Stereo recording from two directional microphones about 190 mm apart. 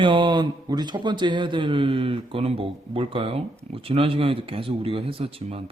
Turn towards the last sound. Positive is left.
turn(degrees=-30)  # may be behind; listen again after turning